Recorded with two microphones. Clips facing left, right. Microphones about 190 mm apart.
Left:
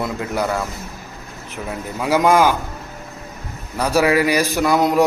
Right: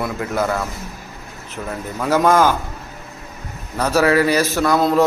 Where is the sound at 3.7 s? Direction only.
10° left (ahead or behind).